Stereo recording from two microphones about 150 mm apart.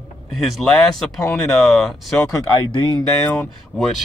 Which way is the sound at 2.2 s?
25° left (ahead or behind).